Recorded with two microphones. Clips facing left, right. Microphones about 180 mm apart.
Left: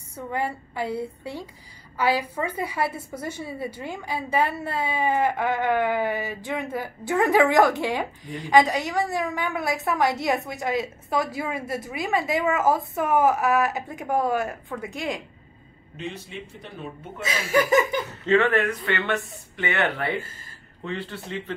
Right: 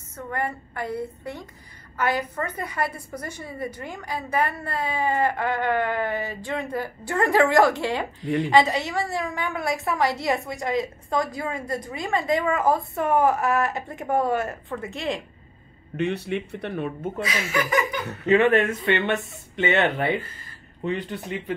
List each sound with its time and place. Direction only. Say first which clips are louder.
0.1 s a sound: left 1 dB; 10° left (ahead or behind)
0.9 s a woman's voice: even; 30° left (ahead or behind)
2.0 s a woman's voice: left 1 dB; 10° left (ahead or behind)
16.0 s speech: right 9 dB; 65° right (ahead or behind)
17.2 s speech: left 5 dB; 30° left (ahead or behind)
18.2 s speech: right 3 dB; 20° right (ahead or behind)